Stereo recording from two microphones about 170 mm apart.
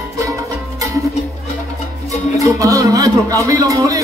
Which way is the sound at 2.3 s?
20° right (ahead or behind).